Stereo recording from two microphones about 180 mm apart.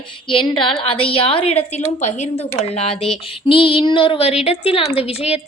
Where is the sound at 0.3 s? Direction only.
30° left (ahead or behind).